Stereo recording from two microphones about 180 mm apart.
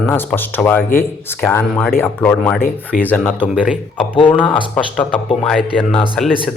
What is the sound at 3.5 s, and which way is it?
Speech, 5° right (ahead or behind).